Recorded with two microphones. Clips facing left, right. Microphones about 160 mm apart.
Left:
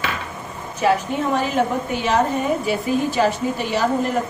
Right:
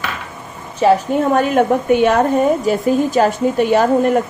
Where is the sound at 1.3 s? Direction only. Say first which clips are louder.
Right 6 dB; 55° right (ahead or behind).